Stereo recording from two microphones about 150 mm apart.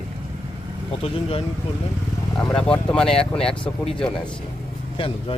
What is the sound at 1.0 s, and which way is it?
Speech, 40° left (ahead or behind).